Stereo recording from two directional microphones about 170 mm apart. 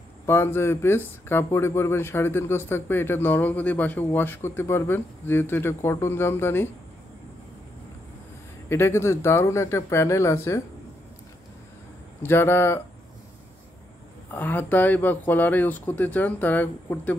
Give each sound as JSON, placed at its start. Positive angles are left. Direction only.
{"t": 0.3, "sound": "speech", "side_deg": 15}
{"t": 8.6, "sound": "speech", "side_deg": 15}
{"t": 12.2, "sound": "speech", "side_deg": 15}
{"t": 14.3, "sound": "speech", "side_deg": 10}